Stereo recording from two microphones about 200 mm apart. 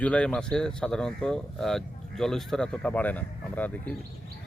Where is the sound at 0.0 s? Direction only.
5° left (ahead or behind).